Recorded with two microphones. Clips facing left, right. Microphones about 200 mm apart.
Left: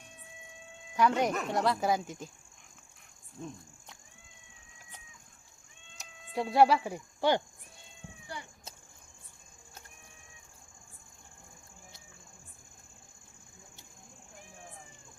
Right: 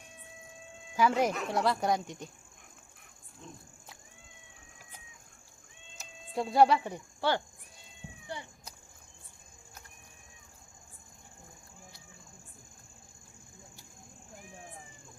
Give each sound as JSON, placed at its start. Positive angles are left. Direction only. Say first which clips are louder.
{"t": 0.9, "sound": "speech", "louder": "even", "side_deg": 0}
{"t": 3.4, "sound": "speech", "louder": "left 7 dB", "side_deg": 45}
{"t": 6.0, "sound": "speech", "louder": "even", "side_deg": 0}
{"t": 7.2, "sound": "speech", "louder": "left 3 dB", "side_deg": 15}
{"t": 8.3, "sound": "speech", "louder": "right 2 dB", "side_deg": -20}